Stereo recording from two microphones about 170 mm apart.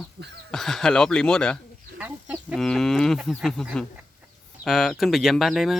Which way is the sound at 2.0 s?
10° right (ahead or behind).